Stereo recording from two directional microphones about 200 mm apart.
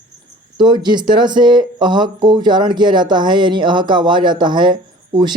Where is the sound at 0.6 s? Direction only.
20° right (ahead or behind).